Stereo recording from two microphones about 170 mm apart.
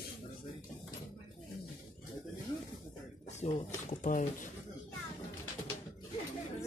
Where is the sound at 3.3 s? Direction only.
40° left (ahead or behind).